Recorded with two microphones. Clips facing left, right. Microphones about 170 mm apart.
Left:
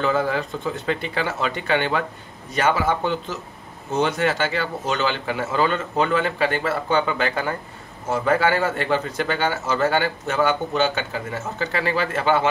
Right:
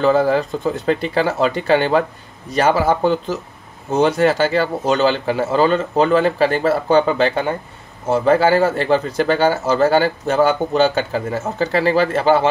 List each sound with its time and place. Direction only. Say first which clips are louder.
0.0 s speech: right 7 dB; 35° right (ahead or behind)